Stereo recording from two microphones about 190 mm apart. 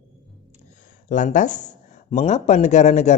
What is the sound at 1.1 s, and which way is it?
A man's voice, 40° left (ahead or behind).